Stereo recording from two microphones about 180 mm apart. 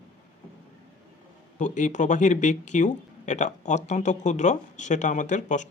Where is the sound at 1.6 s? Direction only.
45° left (ahead or behind).